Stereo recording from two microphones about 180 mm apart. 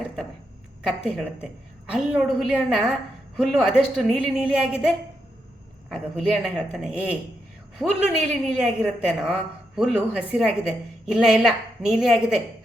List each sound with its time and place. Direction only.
0.9 s a woman's voice: 5° right (ahead or behind)
5.9 s a woman's voice: 5° right (ahead or behind)